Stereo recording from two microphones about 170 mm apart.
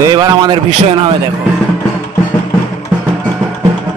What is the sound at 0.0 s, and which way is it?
Speech, 25° right (ahead or behind).